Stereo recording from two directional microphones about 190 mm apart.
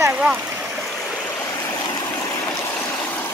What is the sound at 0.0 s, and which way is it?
Stream, 10° right (ahead or behind).